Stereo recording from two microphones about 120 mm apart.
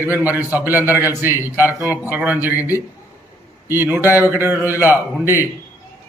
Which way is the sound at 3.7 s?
15° right (ahead or behind).